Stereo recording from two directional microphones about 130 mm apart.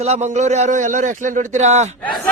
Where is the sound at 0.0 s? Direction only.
60° right (ahead or behind).